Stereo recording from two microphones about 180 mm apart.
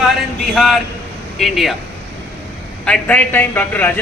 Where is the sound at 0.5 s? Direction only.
Centre (ahead or behind).